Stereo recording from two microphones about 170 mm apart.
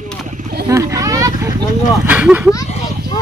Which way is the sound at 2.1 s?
10° right (ahead or behind).